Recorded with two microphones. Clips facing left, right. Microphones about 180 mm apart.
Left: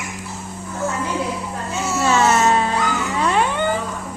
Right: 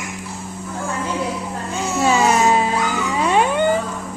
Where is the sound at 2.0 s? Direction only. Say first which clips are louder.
Right 1 dB; 15° right (ahead or behind).